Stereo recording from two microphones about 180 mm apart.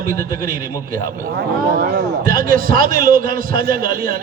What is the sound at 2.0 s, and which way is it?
A man's voice, 50° right (ahead or behind).